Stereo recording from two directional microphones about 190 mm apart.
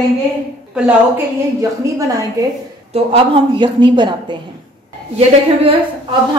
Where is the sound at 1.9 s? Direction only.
15° right (ahead or behind).